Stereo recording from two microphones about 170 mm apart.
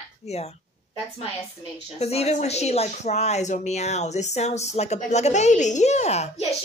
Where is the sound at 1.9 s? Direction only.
40° left (ahead or behind).